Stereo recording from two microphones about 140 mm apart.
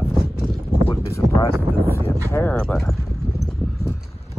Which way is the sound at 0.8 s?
20° left (ahead or behind).